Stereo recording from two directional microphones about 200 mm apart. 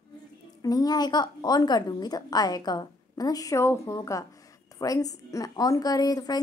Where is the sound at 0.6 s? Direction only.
20° left (ahead or behind).